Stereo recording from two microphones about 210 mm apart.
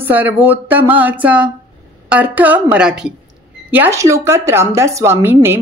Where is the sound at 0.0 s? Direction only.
10° right (ahead or behind).